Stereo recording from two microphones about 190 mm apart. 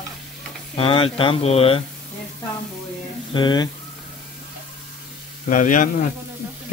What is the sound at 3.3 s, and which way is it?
Speech, 25° left (ahead or behind).